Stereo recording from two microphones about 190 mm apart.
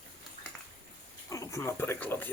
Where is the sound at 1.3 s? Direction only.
15° left (ahead or behind).